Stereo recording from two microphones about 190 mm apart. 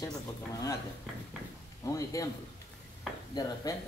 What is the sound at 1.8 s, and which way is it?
Speech, 15° left (ahead or behind).